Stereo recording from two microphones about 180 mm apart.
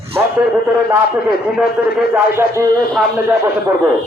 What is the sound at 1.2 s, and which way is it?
A man's voice, 10° right (ahead or behind).